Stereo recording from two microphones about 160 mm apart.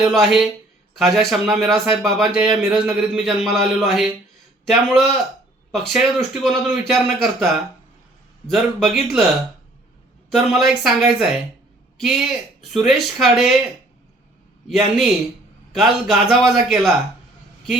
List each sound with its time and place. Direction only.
0.0 s a man's voice: centre (ahead or behind)
10.3 s a man's voice: centre (ahead or behind)
14.7 s a man's voice: centre (ahead or behind)